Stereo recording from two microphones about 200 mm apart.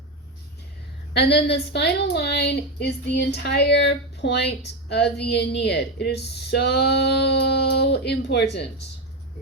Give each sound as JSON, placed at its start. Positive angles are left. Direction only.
{"t": 1.1, "sound": "a woman's voice", "side_deg": 55}